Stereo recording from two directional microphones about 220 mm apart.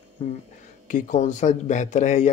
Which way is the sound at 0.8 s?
35° left (ahead or behind).